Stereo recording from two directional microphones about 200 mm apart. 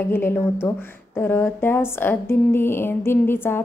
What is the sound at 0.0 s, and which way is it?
A woman's voice, 10° left (ahead or behind).